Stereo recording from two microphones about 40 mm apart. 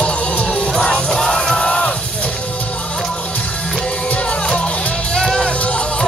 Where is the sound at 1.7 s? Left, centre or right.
Left.